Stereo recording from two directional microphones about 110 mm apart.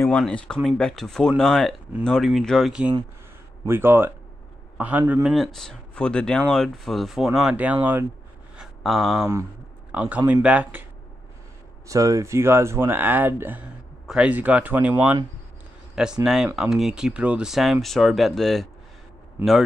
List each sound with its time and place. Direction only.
0.1 s speech: 10° left (ahead or behind)
3.6 s speech: 20° right (ahead or behind)
5.3 s speech: centre (ahead or behind)
7.5 s speech: 15° right (ahead or behind)
8.5 s a sound: centre (ahead or behind)
9.2 s speech: 25° right (ahead or behind)
9.9 s speech: 15° right (ahead or behind)
11.9 s speech: 30° right (ahead or behind); by 18.7 s centre (ahead or behind)